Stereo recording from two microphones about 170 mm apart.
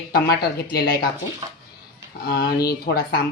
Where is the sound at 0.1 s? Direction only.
70° left (ahead or behind).